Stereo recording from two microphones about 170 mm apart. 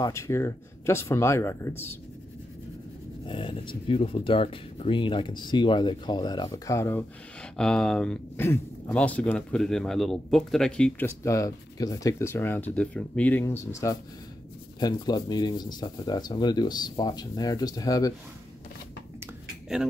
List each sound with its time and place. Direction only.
0.0 s speech: 15° left (ahead or behind)
3.3 s speech: 30° left (ahead or behind)